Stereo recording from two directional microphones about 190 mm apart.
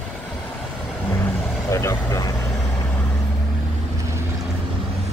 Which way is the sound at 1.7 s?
15° left (ahead or behind).